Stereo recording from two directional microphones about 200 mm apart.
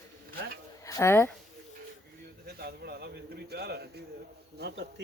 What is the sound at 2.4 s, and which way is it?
A man's voice, 50° right (ahead or behind).